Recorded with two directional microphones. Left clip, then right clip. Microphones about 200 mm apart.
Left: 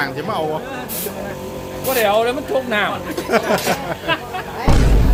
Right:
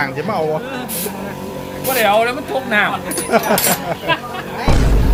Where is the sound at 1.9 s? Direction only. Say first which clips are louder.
Right 2 dB; 15° left (ahead or behind).